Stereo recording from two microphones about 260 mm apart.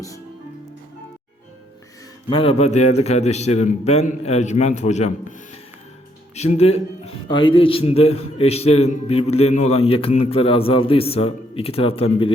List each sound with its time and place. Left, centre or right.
2.3 s speech: left
6.3 s speech: left